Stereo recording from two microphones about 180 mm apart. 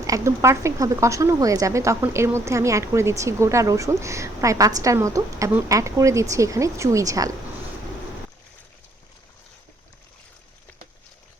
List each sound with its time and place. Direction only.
0.0 s speech: 15° right (ahead or behind)